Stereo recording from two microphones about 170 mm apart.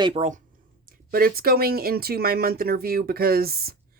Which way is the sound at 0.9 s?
60° right (ahead or behind).